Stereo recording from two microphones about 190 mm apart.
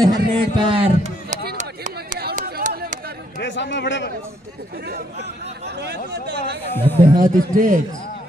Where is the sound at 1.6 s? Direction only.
40° right (ahead or behind).